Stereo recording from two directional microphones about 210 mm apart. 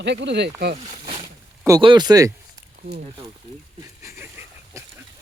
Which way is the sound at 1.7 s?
20° right (ahead or behind).